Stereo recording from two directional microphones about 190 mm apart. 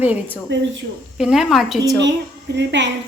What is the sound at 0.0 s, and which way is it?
A woman's voice, 10° right (ahead or behind).